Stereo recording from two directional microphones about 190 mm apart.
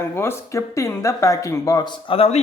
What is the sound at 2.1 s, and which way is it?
Speech, 30° left (ahead or behind).